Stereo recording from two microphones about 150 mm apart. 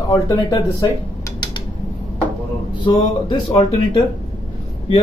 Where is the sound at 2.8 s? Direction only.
35° left (ahead or behind).